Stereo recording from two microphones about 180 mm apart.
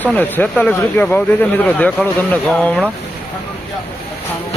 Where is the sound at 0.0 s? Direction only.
10° left (ahead or behind).